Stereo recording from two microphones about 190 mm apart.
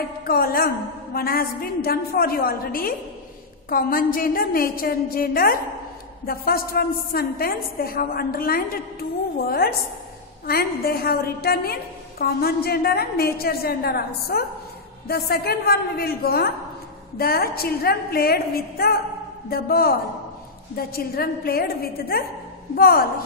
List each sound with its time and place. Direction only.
0.2 s a woman's voice: 50° left (ahead or behind)
10.4 s a woman's voice: 55° left (ahead or behind)